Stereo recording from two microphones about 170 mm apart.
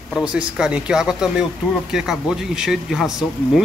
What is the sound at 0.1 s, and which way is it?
Speech, 5° right (ahead or behind).